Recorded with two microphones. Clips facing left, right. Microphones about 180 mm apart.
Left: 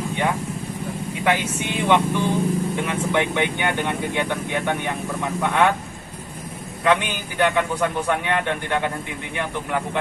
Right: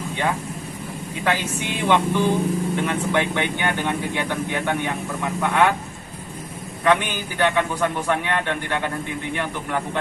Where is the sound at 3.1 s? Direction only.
15° left (ahead or behind).